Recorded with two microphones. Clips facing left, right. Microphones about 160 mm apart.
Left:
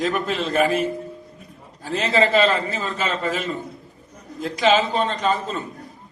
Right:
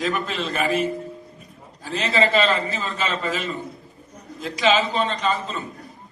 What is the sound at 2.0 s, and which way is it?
A man's voice, 50° left (ahead or behind).